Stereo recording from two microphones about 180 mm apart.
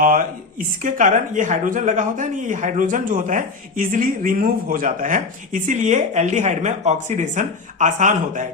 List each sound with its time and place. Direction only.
0.0 s speech: 50° right (ahead or behind)